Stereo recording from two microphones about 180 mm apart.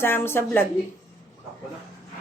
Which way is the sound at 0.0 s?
10° left (ahead or behind).